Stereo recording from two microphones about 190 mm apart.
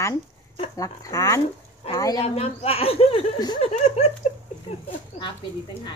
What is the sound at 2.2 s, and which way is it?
Speech, 35° left (ahead or behind).